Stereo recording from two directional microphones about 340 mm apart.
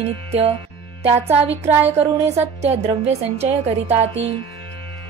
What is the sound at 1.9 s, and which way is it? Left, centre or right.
A woman's voice, centre.